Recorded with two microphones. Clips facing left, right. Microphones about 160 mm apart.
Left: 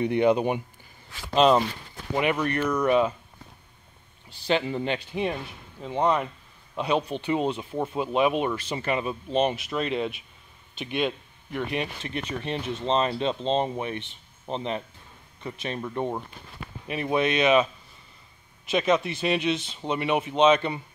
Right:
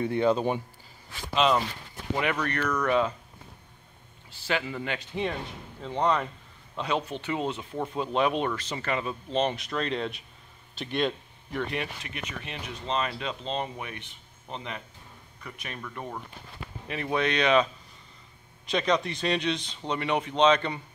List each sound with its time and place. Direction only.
0.0 s speech: 20° left (ahead or behind)
1.3 s speech: 40° left (ahead or behind)
2.7 s speech: 15° left (ahead or behind)
4.5 s speech: 25° left (ahead or behind); by 11.7 s 5° left (ahead or behind)
11.7 s speech: 20° left (ahead or behind)
12.1 s speech: 30° left (ahead or behind)
16.8 s speech: 15° left (ahead or behind)
18.7 s speech: 5° left (ahead or behind)